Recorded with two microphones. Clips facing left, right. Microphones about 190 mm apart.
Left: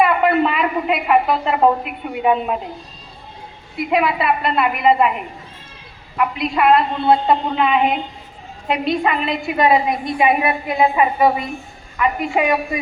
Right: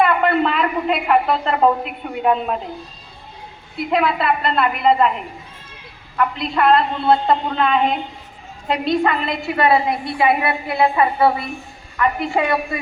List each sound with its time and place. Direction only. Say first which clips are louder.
0.0 s a woman's voice: left 1 dB; 10° left (ahead or behind)
3.8 s a woman's voice: left 1 dB; 10° left (ahead or behind)
6.1 s a woman's voice: left 1 dB; 10° left (ahead or behind)